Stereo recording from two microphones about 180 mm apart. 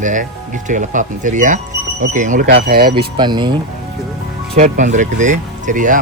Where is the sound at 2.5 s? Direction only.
60° right (ahead or behind).